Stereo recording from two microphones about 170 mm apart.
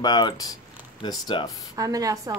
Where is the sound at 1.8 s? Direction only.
20° right (ahead or behind).